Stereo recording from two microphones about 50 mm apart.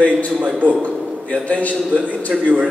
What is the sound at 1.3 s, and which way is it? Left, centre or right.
Speech, left.